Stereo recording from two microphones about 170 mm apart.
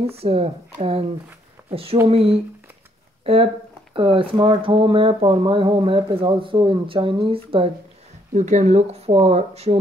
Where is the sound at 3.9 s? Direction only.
35° right (ahead or behind).